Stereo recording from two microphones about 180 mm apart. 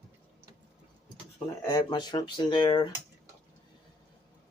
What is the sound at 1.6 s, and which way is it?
Speech, 20° left (ahead or behind).